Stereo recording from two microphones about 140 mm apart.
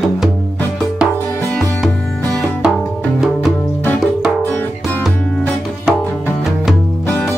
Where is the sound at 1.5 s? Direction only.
Centre (ahead or behind).